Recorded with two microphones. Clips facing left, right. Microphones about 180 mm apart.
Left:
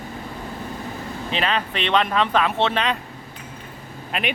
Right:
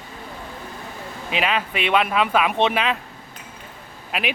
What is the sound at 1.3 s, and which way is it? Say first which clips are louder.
Speech: right 1 dB; 10° right (ahead or behind).